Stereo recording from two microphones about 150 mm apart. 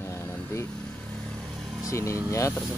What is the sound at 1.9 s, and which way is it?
Speech, 20° left (ahead or behind).